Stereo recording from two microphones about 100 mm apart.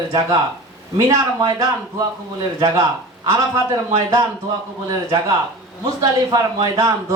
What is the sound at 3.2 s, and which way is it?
Speech, 30° right (ahead or behind).